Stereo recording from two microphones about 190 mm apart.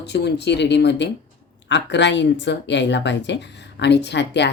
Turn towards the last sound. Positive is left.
turn(degrees=65)  # may be behind; listen again after turning